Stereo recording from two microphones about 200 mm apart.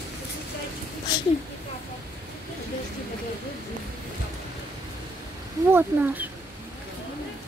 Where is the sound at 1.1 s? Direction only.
20° left (ahead or behind).